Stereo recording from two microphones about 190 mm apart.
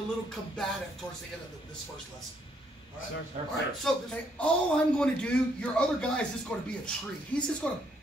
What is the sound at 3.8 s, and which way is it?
A man's voice, 5° left (ahead or behind).